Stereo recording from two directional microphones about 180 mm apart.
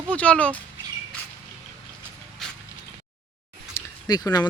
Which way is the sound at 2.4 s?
Centre (ahead or behind).